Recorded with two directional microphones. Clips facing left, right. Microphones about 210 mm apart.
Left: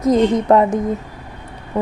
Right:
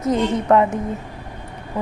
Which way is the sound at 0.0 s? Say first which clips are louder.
Left 5 dB; 35° left (ahead or behind).